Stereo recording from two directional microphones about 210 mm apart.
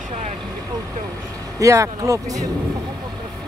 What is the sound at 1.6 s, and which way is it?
Speech, 15° right (ahead or behind).